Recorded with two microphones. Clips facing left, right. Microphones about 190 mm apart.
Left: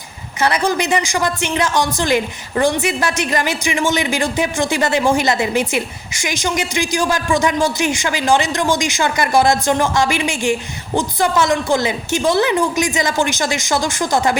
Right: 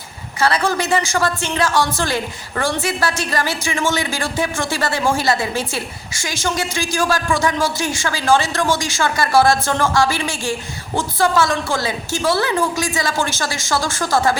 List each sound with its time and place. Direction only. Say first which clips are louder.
0.3 s a woman's voice: left 1 dB; 20° left (ahead or behind)